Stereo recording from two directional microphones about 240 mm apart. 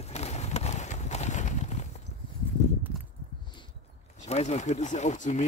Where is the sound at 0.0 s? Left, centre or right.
Left.